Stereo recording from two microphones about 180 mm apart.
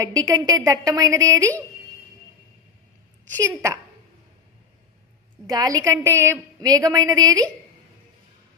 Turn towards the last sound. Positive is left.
turn(degrees=-20)  # may be behind; listen again after turning